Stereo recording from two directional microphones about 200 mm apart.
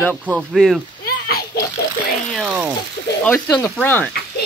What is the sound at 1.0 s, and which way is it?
Splash, 50° left (ahead or behind).